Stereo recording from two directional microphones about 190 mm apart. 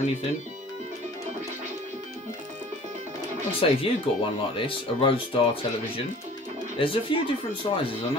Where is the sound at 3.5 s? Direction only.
30° left (ahead or behind).